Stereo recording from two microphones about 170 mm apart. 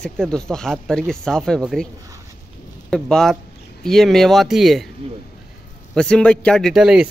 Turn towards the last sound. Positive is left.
turn(degrees=-5)  # may be behind; listen again after turning